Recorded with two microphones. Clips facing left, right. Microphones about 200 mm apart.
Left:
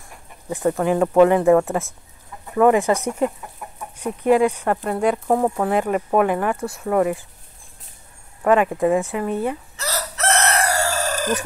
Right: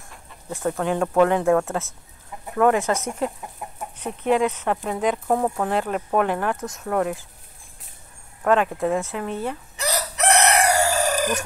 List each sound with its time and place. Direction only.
0.7 s speech: 5° left (ahead or behind)
4.0 s speech: 10° left (ahead or behind)
8.5 s speech: 5° left (ahead or behind)
9.8 s chicken: 15° right (ahead or behind)